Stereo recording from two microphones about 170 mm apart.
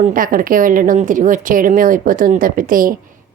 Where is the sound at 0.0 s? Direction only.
55° right (ahead or behind).